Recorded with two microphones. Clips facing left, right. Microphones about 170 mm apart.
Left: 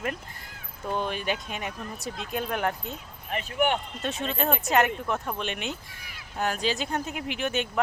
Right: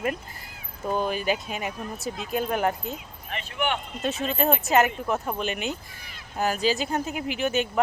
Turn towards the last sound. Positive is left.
turn(degrees=0)  # may be behind; listen again after turning